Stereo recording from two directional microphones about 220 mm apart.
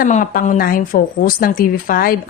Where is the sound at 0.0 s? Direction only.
35° left (ahead or behind).